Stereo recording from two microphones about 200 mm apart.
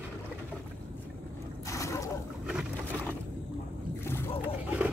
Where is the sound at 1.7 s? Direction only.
15° left (ahead or behind).